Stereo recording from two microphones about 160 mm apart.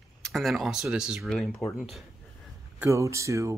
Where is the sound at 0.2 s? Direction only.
Centre (ahead or behind).